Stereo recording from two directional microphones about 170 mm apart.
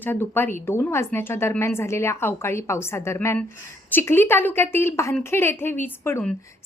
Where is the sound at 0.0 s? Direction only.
10° left (ahead or behind).